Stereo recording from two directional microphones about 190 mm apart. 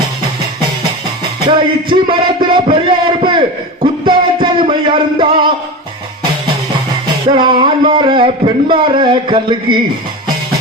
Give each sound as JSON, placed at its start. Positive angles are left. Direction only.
{"t": 1.5, "sound": "speech", "side_deg": -25}
{"t": 4.0, "sound": "music", "side_deg": -25}
{"t": 7.3, "sound": "speech", "side_deg": -25}